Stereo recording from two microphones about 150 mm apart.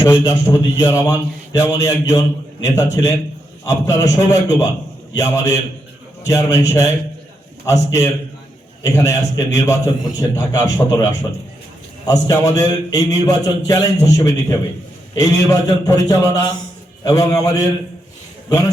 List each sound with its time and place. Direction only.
0.0 s a man's voice: 20° left (ahead or behind)